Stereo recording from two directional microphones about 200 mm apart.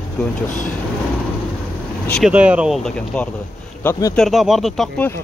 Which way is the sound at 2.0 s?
Centre (ahead or behind).